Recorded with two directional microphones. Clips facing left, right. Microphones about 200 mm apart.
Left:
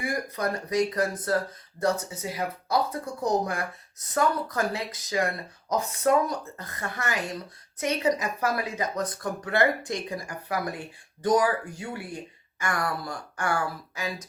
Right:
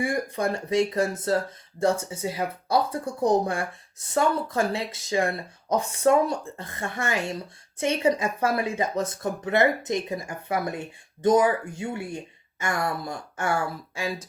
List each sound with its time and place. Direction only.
0.0 s speech: 25° right (ahead or behind)